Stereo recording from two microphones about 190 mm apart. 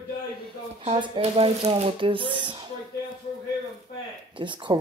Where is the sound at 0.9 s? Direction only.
30° right (ahead or behind).